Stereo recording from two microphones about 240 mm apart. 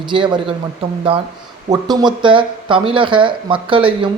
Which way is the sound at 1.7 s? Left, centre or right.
Centre.